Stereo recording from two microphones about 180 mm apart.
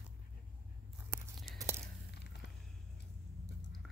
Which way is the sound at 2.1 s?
70° left (ahead or behind).